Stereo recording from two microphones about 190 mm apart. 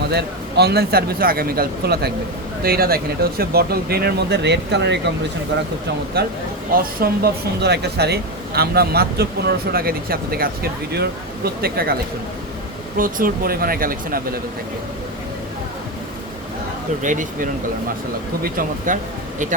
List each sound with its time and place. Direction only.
0.1 s speech: 60° right (ahead or behind)
6.7 s speech: 55° right (ahead or behind)
13.0 s speech: 50° right (ahead or behind)
17.0 s speech: 45° right (ahead or behind)